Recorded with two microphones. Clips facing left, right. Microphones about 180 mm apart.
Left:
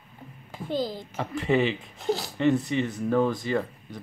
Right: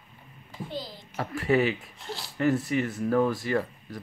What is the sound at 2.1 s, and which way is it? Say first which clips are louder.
Speech: left 11 dB; 40° left (ahead or behind).